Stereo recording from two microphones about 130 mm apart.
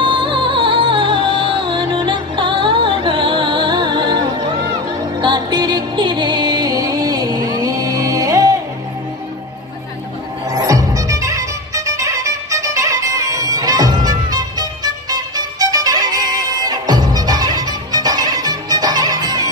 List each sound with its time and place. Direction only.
0.0 s music: 40° right (ahead or behind)
10.5 s music: 25° right (ahead or behind)